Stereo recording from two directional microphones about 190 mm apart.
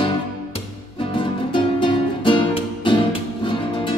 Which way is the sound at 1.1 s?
25° left (ahead or behind).